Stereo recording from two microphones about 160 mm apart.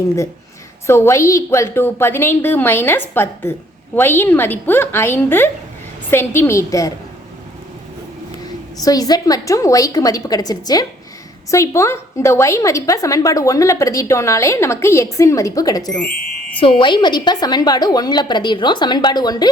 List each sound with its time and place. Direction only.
0.9 s a woman's voice: 15° left (ahead or behind)
8.8 s a woman's voice: 25° left (ahead or behind)
15.9 s a woman's voice: 5° left (ahead or behind)
16.6 s a woman's voice: 35° left (ahead or behind)